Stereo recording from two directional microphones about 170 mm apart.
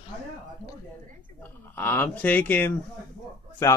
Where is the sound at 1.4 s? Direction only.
15° left (ahead or behind).